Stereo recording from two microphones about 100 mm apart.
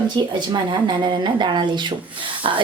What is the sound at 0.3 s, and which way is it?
Speech, 50° right (ahead or behind).